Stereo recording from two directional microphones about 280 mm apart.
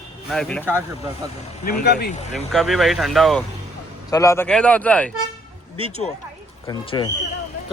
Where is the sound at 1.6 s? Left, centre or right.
Left.